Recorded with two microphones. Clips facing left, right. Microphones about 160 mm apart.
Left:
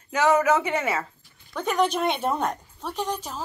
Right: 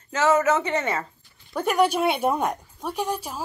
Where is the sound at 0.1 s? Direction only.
15° left (ahead or behind).